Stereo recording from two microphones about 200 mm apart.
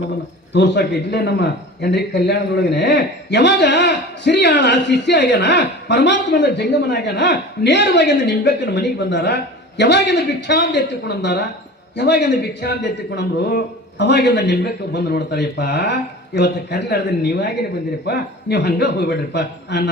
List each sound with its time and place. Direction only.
0.5 s a man's voice: 60° left (ahead or behind)